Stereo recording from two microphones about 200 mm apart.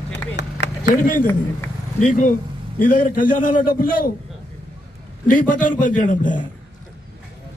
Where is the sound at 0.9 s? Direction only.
40° left (ahead or behind).